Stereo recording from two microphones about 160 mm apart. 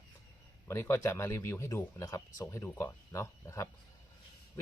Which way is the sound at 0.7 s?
15° left (ahead or behind).